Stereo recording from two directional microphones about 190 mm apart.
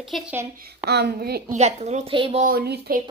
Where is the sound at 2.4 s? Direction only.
55° right (ahead or behind).